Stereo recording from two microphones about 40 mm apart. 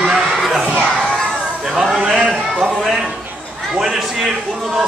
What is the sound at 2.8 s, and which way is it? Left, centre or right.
A man's voice, centre.